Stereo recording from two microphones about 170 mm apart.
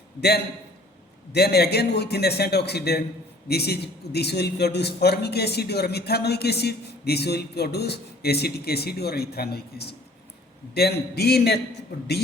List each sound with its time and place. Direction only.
1.3 s a man's voice: 70° left (ahead or behind)
11.9 s a man's voice: 90° left